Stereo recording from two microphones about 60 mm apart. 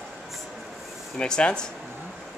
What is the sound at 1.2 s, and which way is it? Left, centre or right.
Speech, centre.